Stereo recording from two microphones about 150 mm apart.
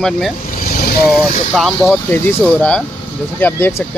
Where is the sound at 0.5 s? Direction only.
70° left (ahead or behind).